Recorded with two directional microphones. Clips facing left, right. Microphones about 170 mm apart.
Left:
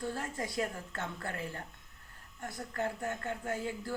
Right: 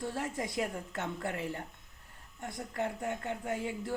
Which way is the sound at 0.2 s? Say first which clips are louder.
Right 1 dB; 20° right (ahead or behind).